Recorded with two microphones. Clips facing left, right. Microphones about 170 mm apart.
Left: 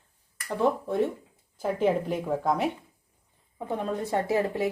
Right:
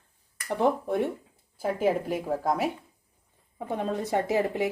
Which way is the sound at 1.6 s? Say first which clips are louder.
Left 1 dB; 5° right (ahead or behind).